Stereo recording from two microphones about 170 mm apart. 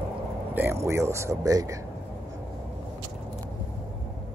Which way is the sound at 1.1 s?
15° right (ahead or behind).